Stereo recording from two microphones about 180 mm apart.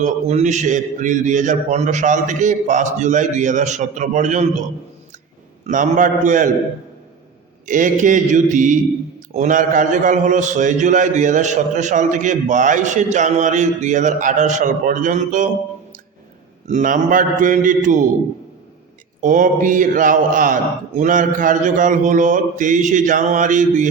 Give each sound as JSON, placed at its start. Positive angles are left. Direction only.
{"t": 0.0, "sound": "a man's voice", "side_deg": -40}
{"t": 5.6, "sound": "a man's voice", "side_deg": -45}
{"t": 7.7, "sound": "a man's voice", "side_deg": -45}
{"t": 16.6, "sound": "a man's voice", "side_deg": -45}
{"t": 19.2, "sound": "a man's voice", "side_deg": -45}